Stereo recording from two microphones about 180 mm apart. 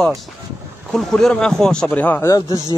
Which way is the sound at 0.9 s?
Centre (ahead or behind).